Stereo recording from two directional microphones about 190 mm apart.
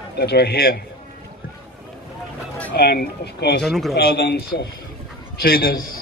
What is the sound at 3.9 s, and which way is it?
A man's voice, 55° left (ahead or behind).